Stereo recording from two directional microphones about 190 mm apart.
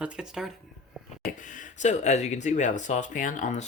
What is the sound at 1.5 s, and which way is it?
Speech, 40° left (ahead or behind).